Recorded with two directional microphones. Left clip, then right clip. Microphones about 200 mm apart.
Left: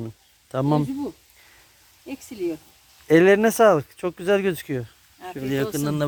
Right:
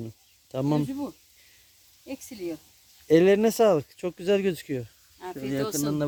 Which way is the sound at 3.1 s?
10° right (ahead or behind).